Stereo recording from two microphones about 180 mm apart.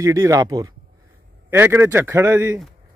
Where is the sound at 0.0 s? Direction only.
15° right (ahead or behind).